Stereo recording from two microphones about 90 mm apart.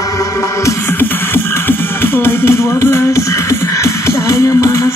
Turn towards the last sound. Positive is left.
turn(degrees=35)  # may be behind; listen again after turning